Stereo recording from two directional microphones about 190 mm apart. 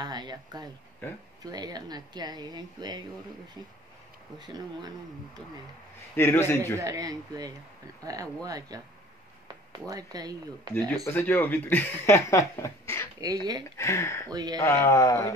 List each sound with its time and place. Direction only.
0.0 s speech: 20° right (ahead or behind)
4.4 s speech: 20° right (ahead or behind)
6.1 s speech: 10° left (ahead or behind)
6.8 s speech: 20° right (ahead or behind)
11.1 s speech: 10° left (ahead or behind)
13.2 s speech: 20° right (ahead or behind)
13.7 s speech: 15° left (ahead or behind)
14.3 s speech: 20° right (ahead or behind)
14.6 s speech: 15° left (ahead or behind)